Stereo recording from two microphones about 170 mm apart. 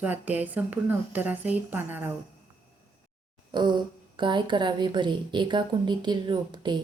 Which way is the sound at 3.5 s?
25° right (ahead or behind).